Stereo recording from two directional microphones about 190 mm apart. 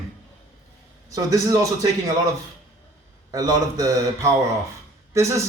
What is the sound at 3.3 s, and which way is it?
Speech, 20° right (ahead or behind).